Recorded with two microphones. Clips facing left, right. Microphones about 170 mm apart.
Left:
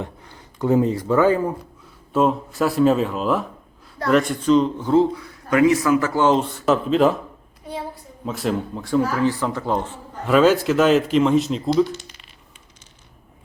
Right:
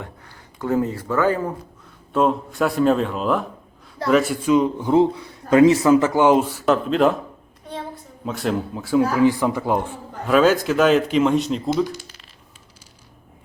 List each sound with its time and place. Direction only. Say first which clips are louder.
0.0 s speech: left 5 dB; 20° left (ahead or behind)
2.1 s a man's voice: even; centre (ahead or behind)
8.2 s speech: even; centre (ahead or behind)
9.1 s a man's voice: right 4 dB; 15° right (ahead or behind)
10.2 s speech: left 1 dB; centre (ahead or behind)